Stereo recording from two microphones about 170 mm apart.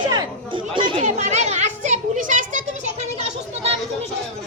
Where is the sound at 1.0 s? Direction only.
40° right (ahead or behind).